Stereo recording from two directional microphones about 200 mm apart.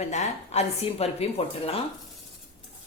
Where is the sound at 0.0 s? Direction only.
35° left (ahead or behind).